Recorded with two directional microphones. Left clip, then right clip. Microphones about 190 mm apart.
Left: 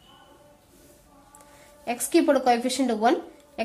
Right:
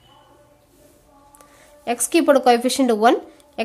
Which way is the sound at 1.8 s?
30° right (ahead or behind).